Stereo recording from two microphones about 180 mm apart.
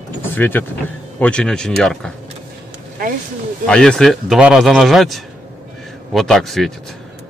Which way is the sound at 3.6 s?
5° left (ahead or behind).